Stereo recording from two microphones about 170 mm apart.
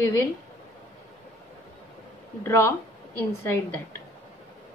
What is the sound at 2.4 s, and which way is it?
A woman's voice, 15° left (ahead or behind).